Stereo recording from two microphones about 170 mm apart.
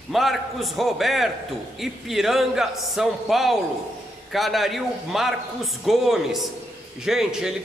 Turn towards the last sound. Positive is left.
turn(degrees=-5)  # may be behind; listen again after turning